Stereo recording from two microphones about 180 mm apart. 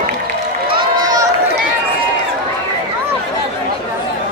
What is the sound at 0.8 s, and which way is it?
Run, 20° right (ahead or behind).